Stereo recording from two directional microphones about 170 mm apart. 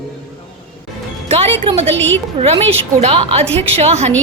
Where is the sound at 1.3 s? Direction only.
35° right (ahead or behind).